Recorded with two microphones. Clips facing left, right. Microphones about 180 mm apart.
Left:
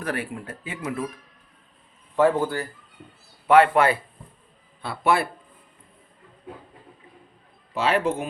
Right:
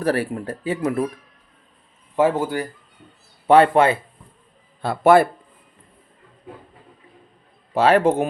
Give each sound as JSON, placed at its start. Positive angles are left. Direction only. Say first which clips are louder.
{"t": 0.0, "sound": "speech", "louder": "right 8 dB", "side_deg": -35}
{"t": 2.1, "sound": "speech", "louder": "right 1 dB", "side_deg": -10}
{"t": 3.4, "sound": "speech", "louder": "right 3 dB", "side_deg": -30}
{"t": 4.8, "sound": "a man's voice", "louder": "right 9 dB", "side_deg": -45}
{"t": 7.7, "sound": "a man's voice", "louder": "right 7 dB", "side_deg": -45}